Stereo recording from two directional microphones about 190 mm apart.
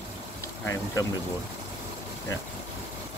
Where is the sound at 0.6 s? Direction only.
15° left (ahead or behind).